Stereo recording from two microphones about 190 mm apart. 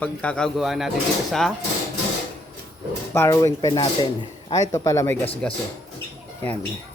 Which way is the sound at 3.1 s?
15° left (ahead or behind).